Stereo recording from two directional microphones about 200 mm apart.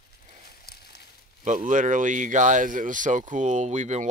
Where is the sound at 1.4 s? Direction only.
40° right (ahead or behind).